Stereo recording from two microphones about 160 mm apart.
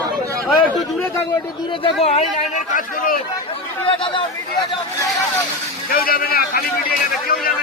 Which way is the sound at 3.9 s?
30° left (ahead or behind).